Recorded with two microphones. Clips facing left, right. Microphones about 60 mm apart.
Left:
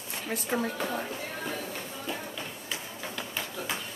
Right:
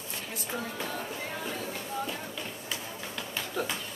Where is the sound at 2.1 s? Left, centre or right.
Centre.